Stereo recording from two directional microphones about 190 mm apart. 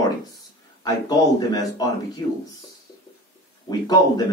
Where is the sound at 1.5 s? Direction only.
20° left (ahead or behind).